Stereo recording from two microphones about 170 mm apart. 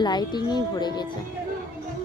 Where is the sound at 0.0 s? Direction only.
25° left (ahead or behind).